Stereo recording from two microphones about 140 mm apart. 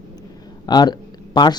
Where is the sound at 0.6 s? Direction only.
30° left (ahead or behind).